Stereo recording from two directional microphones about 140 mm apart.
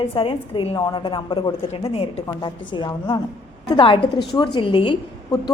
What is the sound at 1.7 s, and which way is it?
A woman's voice, 45° left (ahead or behind).